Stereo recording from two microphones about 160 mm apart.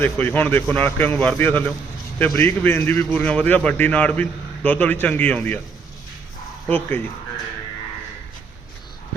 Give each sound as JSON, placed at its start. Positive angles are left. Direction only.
{"t": 0.0, "sound": "a man's voice", "side_deg": 10}
{"t": 6.7, "sound": "a man's voice", "side_deg": 10}